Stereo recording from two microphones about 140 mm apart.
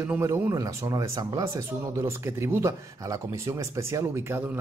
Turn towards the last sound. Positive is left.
turn(degrees=-15)  # may be behind; listen again after turning